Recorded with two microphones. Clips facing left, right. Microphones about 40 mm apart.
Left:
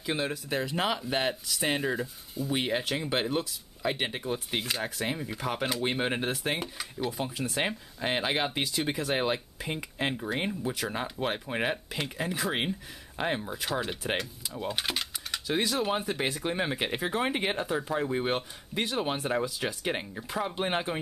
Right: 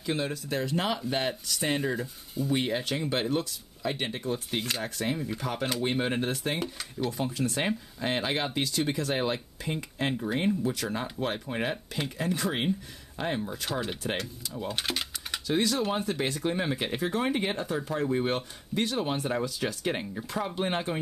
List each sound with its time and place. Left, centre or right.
0.0 s speech: centre
2.6 s speech: centre